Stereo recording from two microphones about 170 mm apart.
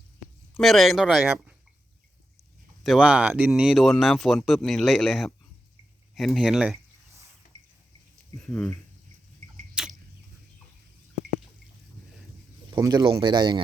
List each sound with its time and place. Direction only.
0.5 s speech: centre (ahead or behind)
2.8 s speech: 5° right (ahead or behind)
8.4 s speech: 5° left (ahead or behind)
9.8 s a sound: 5° right (ahead or behind)
12.7 s a man's voice: 20° right (ahead or behind)